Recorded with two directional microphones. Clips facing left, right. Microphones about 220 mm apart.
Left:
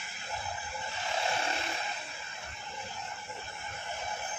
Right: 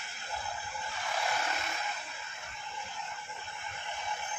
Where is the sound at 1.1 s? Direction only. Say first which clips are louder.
Left 2 dB; 25° left (ahead or behind).